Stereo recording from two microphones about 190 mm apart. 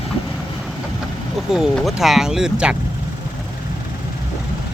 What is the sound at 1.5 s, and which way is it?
Speech, centre (ahead or behind).